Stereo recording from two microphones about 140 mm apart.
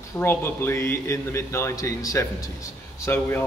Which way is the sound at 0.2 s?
15° left (ahead or behind).